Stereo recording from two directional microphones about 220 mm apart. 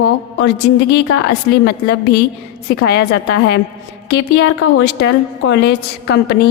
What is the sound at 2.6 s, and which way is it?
Speech, 45° left (ahead or behind).